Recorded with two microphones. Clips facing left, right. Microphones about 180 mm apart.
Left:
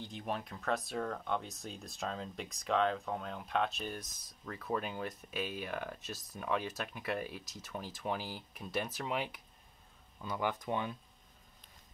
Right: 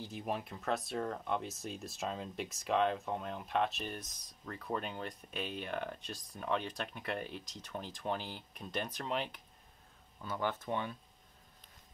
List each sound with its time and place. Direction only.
0.0 s speech: 5° right (ahead or behind); by 11.0 s 15° left (ahead or behind)